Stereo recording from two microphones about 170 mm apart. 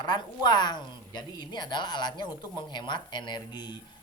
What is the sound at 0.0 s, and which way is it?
A woman's voice, 25° left (ahead or behind).